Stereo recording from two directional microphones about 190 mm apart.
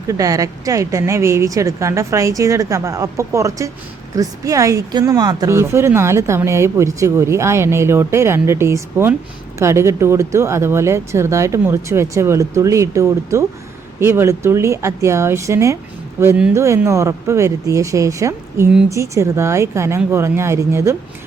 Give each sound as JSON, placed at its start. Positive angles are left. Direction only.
{"t": 0.1, "sound": "speech", "side_deg": -20}